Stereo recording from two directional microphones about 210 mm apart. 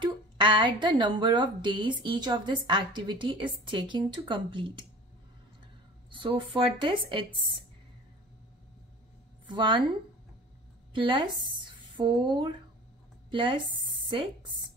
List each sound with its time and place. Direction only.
0.0 s speech: 25° right (ahead or behind)
6.0 s speech: 20° right (ahead or behind)
9.5 s speech: 20° right (ahead or behind)
10.9 s a woman's voice: 25° right (ahead or behind)